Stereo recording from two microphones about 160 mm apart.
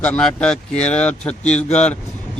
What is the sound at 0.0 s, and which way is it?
Speech, 10° left (ahead or behind).